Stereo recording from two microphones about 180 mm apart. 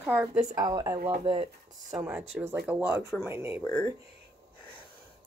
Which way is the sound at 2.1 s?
5° right (ahead or behind).